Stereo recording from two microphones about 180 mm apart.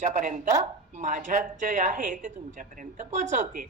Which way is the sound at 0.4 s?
15° right (ahead or behind).